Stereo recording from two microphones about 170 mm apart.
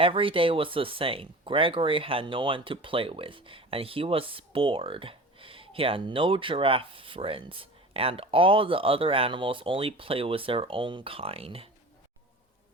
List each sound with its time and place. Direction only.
0.0 s speech: 30° right (ahead or behind)